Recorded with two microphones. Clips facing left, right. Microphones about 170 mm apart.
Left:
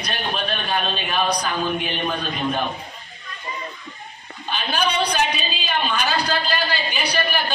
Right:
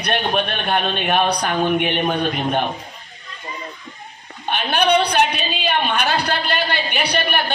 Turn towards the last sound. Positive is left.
turn(degrees=-65)  # may be behind; listen again after turning